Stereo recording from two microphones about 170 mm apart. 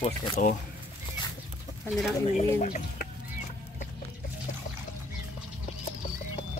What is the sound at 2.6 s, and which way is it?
Speech, 45° left (ahead or behind).